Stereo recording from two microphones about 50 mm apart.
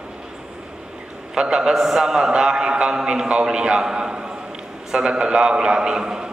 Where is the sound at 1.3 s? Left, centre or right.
Centre.